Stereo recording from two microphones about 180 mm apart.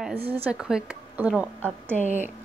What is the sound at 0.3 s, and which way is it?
Speech, 10° right (ahead or behind).